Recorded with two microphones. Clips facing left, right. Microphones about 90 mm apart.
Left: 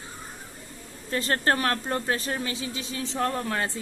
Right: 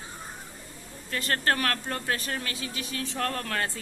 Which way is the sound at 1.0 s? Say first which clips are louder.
Left 3 dB; 30° left (ahead or behind).